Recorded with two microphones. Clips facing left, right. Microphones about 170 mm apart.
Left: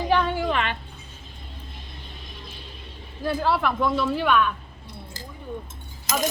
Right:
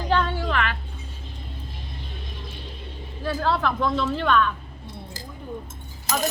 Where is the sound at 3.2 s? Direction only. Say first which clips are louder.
Left 1 dB; 10° left (ahead or behind).